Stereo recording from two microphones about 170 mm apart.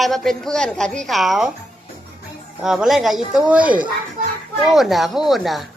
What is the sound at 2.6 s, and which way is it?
Speech, 5° right (ahead or behind).